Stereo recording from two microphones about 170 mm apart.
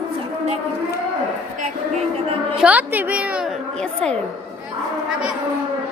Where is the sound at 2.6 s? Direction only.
10° right (ahead or behind).